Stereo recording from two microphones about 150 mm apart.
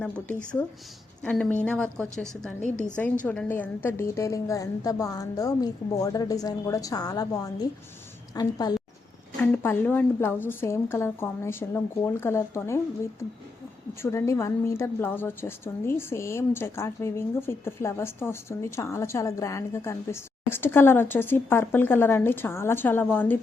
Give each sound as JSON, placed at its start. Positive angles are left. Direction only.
{"t": 0.0, "sound": "a woman's voice", "side_deg": 5}
{"t": 2.6, "sound": "a woman's voice", "side_deg": 55}
{"t": 2.8, "sound": "a woman's voice", "side_deg": 10}
{"t": 9.4, "sound": "a woman's voice", "side_deg": 10}
{"t": 14.0, "sound": "a woman's voice", "side_deg": 20}